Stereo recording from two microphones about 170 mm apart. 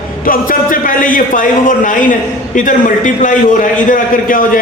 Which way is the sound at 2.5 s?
50° left (ahead or behind).